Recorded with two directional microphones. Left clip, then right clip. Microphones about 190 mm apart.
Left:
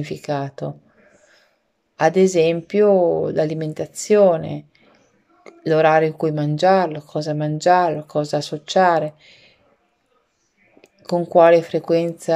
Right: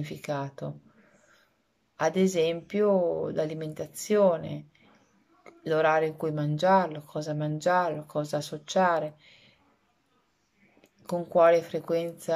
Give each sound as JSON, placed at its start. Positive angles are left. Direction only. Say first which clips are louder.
{"t": 0.0, "sound": "speech", "louder": "left 9 dB", "side_deg": -15}
{"t": 2.0, "sound": "speech", "louder": "left 10 dB", "side_deg": -15}
{"t": 10.8, "sound": "speech", "louder": "left 10 dB", "side_deg": -15}